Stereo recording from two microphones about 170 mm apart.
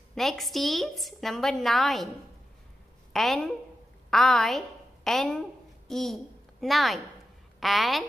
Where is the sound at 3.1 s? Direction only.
Centre (ahead or behind).